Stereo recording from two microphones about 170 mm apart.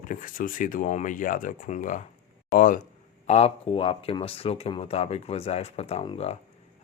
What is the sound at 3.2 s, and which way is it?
Speech, 35° left (ahead or behind).